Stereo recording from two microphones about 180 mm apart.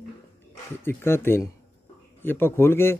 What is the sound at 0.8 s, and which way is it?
Speech, 15° left (ahead or behind).